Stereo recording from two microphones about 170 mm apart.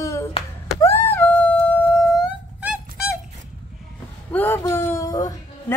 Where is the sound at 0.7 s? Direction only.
15° left (ahead or behind).